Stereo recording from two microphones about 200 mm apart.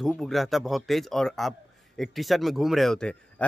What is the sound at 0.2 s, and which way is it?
Speech, centre (ahead or behind).